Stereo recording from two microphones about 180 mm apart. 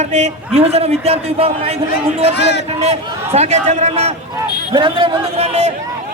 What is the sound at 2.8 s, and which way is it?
A man's voice, 35° right (ahead or behind).